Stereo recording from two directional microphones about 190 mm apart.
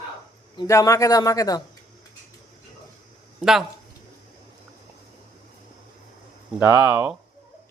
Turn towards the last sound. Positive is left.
turn(degrees=-10)  # may be behind; listen again after turning